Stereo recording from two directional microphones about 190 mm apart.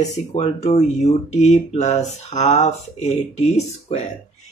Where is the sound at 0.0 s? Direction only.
35° left (ahead or behind).